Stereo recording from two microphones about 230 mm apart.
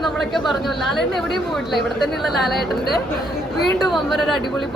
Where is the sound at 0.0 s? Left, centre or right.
Centre.